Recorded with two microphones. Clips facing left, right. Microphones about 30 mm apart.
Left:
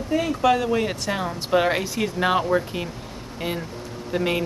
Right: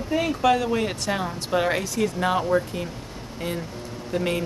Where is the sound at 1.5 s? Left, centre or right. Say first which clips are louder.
Left 3 dB; centre.